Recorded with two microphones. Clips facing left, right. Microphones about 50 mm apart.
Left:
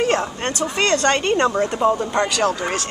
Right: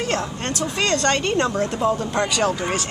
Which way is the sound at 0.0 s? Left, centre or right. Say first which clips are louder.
Left 4 dB; left.